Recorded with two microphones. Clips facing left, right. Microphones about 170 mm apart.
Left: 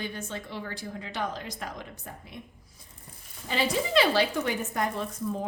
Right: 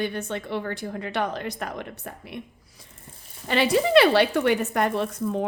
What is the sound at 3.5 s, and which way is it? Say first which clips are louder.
A woman's voice: right 7 dB; 70° right (ahead or behind).